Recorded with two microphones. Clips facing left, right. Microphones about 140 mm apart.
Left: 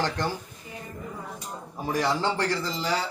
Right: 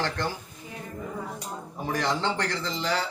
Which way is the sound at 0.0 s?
15° left (ahead or behind).